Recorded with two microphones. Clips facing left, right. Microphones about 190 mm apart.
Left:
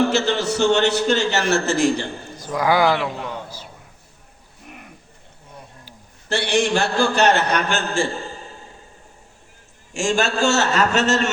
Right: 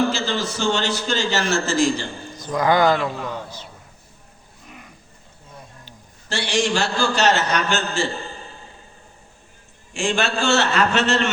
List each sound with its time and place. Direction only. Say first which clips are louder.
0.1 s a man's voice: left 4 dB; 65° left (ahead or behind)
2.4 s a man's voice: even; 10° left (ahead or behind)
4.6 s a sound: left 2 dB; 55° left (ahead or behind)
6.2 s a man's voice: left 2 dB; 55° left (ahead or behind)
9.9 s a man's voice: left 2 dB; 45° left (ahead or behind)